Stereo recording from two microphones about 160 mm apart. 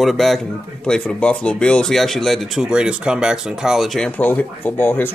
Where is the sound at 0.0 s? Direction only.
Centre (ahead or behind).